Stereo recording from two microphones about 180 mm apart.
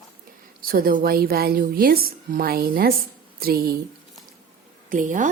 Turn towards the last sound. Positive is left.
turn(degrees=-45)  # may be behind; listen again after turning